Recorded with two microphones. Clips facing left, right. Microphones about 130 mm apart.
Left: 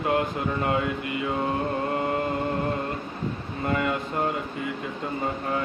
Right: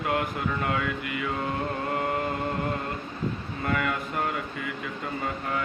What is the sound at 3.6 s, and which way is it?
Mantra, 25° left (ahead or behind).